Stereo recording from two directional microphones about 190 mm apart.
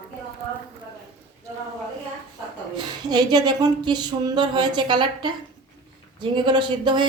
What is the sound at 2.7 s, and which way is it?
Speech, 20° right (ahead or behind).